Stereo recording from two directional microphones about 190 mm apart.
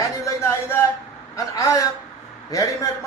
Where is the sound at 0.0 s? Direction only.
15° left (ahead or behind).